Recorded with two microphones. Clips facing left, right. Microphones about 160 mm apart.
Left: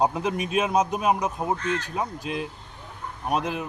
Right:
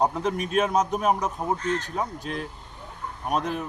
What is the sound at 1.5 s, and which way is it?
Speech, 40° right (ahead or behind).